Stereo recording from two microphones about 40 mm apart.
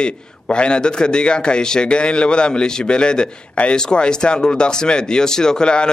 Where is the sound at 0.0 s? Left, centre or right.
Left.